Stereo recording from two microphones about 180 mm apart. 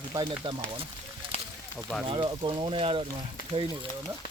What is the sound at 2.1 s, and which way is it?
Speech, 30° right (ahead or behind).